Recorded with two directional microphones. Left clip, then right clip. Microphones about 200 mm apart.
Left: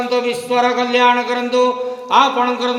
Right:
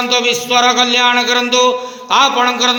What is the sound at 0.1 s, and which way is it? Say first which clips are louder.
Music: right 5 dB; 10° right (ahead or behind).